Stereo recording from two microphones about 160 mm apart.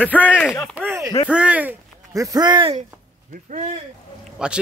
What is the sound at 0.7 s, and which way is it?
Speech, 10° right (ahead or behind).